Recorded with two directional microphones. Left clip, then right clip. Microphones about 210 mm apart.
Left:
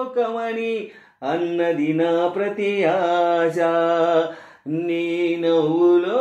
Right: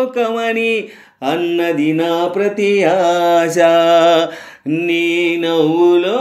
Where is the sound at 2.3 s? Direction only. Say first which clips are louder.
Right 7 dB; 50° right (ahead or behind).